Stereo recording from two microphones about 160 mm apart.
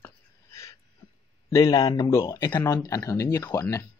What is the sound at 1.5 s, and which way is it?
Speech, 25° left (ahead or behind).